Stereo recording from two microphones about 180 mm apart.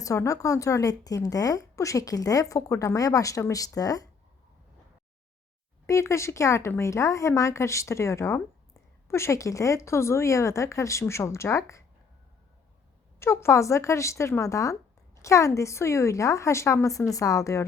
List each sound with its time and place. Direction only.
0.0 s a woman's voice: 15° left (ahead or behind)
5.8 s speech: 15° left (ahead or behind)
13.1 s speech: 15° left (ahead or behind)